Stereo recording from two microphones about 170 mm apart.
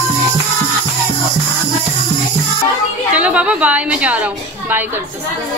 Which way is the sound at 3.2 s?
5° right (ahead or behind).